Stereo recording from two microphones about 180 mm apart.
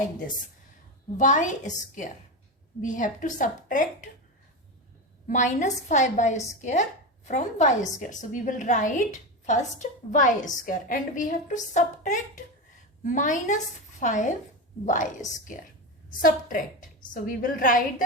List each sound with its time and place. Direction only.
1.1 s a woman's voice: 45° left (ahead or behind)
5.3 s a woman's voice: 40° left (ahead or behind)
16.0 s a woman's voice: 50° left (ahead or behind)